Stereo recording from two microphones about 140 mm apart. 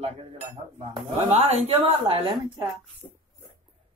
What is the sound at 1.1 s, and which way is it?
Speech, 50° right (ahead or behind).